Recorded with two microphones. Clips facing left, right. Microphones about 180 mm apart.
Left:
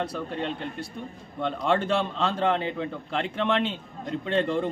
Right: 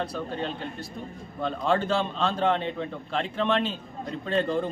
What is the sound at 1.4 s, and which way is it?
A man's voice, centre (ahead or behind).